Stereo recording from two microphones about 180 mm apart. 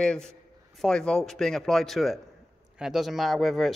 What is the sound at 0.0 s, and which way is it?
A man's voice, 5° left (ahead or behind).